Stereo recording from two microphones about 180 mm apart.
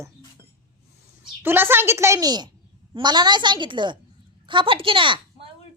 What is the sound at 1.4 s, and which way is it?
A woman's voice, 10° right (ahead or behind).